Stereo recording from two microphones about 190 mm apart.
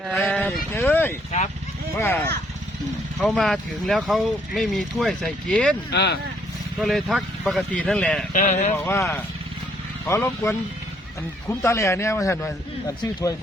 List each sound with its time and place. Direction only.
0.1 s sheep: 5° left (ahead or behind)
1.3 s speech: 35° left (ahead or behind)
1.9 s speech: 10° left (ahead or behind)
3.2 s speech: centre (ahead or behind)
5.9 s speech: 60° left (ahead or behind)
6.8 s speech: centre (ahead or behind)
8.3 s speech: 40° left (ahead or behind)
8.8 s a man's voice: 15° left (ahead or behind)